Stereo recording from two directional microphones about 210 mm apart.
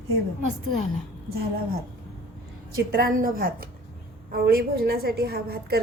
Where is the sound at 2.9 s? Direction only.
45° right (ahead or behind).